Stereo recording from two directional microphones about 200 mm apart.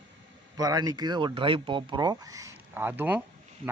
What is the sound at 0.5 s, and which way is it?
A man's voice, 20° right (ahead or behind).